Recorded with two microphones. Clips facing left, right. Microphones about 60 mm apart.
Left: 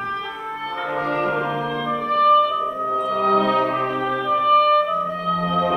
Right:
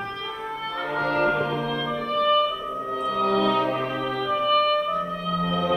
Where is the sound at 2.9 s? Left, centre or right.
Left.